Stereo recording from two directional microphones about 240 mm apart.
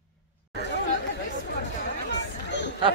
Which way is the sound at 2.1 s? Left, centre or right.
Left.